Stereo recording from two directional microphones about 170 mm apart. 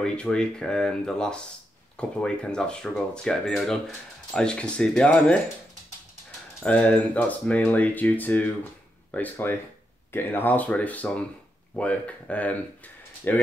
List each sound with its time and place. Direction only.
0.0 s speech: 5° left (ahead or behind)
6.6 s speech: 5° left (ahead or behind)